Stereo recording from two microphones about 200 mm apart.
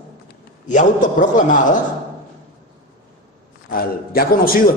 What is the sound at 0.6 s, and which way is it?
Speech, 40° left (ahead or behind).